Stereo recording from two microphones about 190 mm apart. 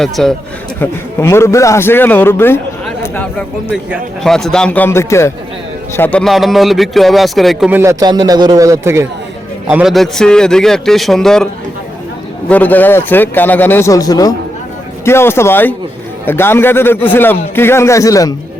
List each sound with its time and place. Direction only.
0.0 s speech: centre (ahead or behind)
0.8 s a man's voice: 15° left (ahead or behind)
3.7 s speech: centre (ahead or behind)
7.8 s a man's voice: 20° right (ahead or behind)
9.6 s speech: 5° right (ahead or behind)
12.5 s a man's voice: 10° left (ahead or behind)